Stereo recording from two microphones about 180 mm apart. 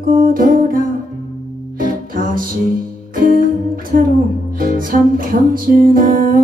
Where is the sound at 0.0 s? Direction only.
50° right (ahead or behind).